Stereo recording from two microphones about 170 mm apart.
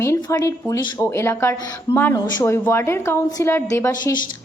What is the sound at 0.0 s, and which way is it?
A woman's voice, 20° left (ahead or behind).